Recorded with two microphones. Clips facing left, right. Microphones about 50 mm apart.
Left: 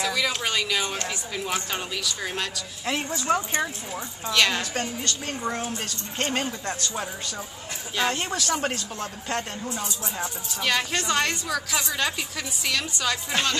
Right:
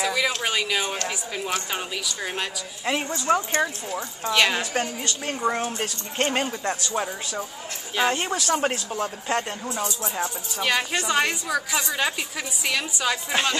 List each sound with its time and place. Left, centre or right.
0.0 s a sound: centre
0.4 s speech: centre
7.9 s speech: centre